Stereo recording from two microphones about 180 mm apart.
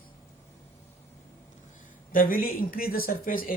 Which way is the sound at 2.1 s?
50° left (ahead or behind).